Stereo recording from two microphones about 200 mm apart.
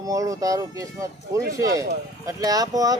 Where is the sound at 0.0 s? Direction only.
15° right (ahead or behind).